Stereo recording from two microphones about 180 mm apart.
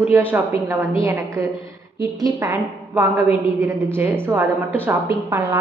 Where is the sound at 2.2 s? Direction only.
15° right (ahead or behind).